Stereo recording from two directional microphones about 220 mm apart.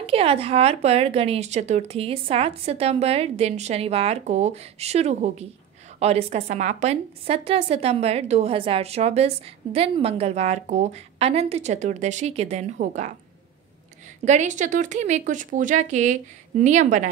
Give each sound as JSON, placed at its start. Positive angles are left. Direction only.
{"t": 0.0, "sound": "a woman's voice", "side_deg": -25}
{"t": 14.2, "sound": "speech", "side_deg": -30}